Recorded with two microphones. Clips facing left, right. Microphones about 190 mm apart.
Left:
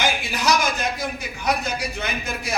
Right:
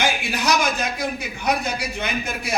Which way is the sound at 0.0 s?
65° right (ahead or behind).